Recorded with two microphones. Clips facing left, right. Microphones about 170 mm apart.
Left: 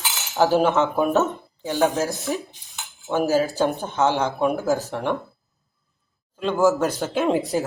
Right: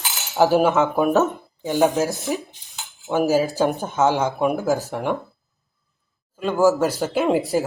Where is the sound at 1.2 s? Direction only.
15° right (ahead or behind).